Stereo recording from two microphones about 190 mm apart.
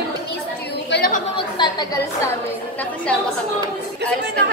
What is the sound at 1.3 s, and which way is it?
Chatter, 25° left (ahead or behind).